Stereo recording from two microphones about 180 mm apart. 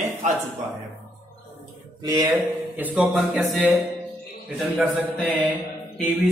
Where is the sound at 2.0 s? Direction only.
20° right (ahead or behind).